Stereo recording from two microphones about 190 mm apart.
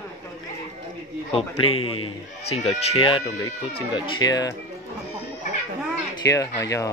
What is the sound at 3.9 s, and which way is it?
Speech, 25° left (ahead or behind).